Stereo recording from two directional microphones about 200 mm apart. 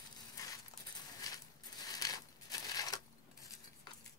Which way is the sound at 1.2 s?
15° left (ahead or behind).